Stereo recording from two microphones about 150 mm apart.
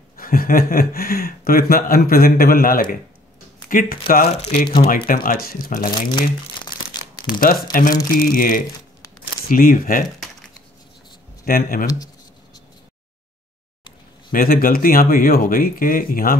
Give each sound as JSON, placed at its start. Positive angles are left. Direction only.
{"t": 0.2, "sound": "speech", "side_deg": 70}
{"t": 6.9, "sound": "crumpling", "side_deg": 30}
{"t": 7.2, "sound": "speech", "side_deg": 65}
{"t": 11.4, "sound": "speech", "side_deg": 70}
{"t": 14.3, "sound": "speech", "side_deg": 70}